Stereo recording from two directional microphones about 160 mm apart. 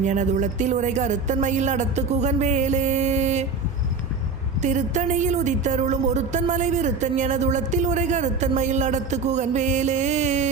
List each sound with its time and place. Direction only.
0.0 s a man's voice: 50° right (ahead or behind)
4.6 s a man's voice: 50° right (ahead or behind)